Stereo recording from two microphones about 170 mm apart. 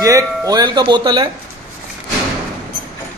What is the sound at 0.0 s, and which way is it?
Speech, 20° right (ahead or behind).